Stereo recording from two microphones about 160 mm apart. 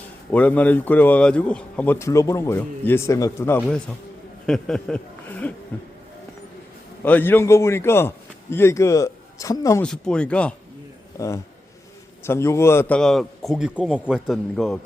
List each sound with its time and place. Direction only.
0.3 s a man's voice: 10° left (ahead or behind)
7.0 s a man's voice: 10° left (ahead or behind)
9.8 s a man's voice: 5° left (ahead or behind)
11.1 s a man's voice: 20° left (ahead or behind)
13.0 s a man's voice: centre (ahead or behind)